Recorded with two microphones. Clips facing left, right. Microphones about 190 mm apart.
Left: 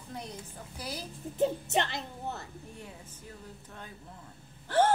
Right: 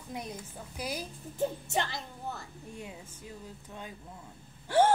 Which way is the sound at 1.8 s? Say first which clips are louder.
Left 2 dB; 20° left (ahead or behind).